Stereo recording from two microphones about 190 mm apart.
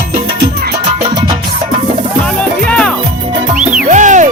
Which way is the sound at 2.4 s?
5° left (ahead or behind).